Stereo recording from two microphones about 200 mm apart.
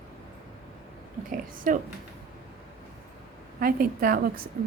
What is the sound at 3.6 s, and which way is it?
Speech, 45° right (ahead or behind).